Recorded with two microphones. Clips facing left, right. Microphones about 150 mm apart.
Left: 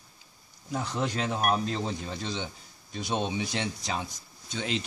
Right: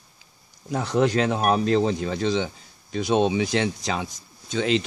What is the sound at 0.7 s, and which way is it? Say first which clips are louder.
Speech: right 9 dB; 85° right.